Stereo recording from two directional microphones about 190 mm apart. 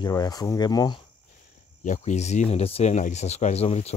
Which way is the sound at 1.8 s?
40° left (ahead or behind).